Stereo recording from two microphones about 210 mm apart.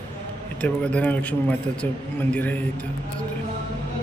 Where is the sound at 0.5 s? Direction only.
5° left (ahead or behind).